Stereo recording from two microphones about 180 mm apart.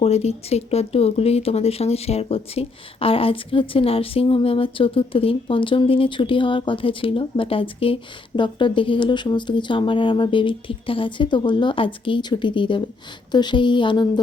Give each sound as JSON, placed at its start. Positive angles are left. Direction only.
{"t": 0.0, "sound": "speech", "side_deg": 35}